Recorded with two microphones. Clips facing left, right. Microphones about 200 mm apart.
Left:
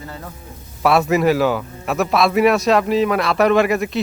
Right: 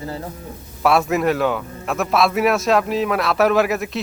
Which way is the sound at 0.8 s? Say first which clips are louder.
Left 2 dB; centre (ahead or behind).